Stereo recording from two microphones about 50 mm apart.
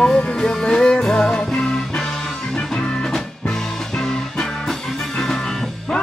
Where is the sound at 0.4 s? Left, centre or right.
Centre.